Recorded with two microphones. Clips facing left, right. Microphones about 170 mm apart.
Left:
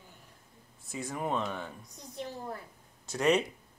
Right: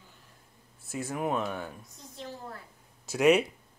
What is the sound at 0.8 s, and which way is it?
Speech, 5° right (ahead or behind).